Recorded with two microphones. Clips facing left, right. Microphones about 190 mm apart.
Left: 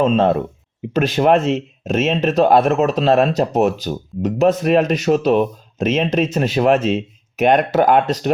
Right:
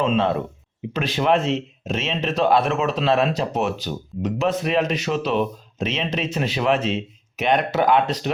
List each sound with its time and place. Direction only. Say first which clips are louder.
0.0 s speech: left 5 dB; 45° left (ahead or behind)